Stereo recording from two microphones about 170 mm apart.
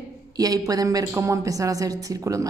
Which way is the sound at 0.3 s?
20° right (ahead or behind).